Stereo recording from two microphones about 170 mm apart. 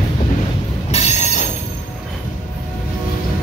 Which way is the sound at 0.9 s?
40° left (ahead or behind).